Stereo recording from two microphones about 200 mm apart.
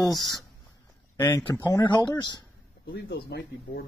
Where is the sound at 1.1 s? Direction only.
10° left (ahead or behind).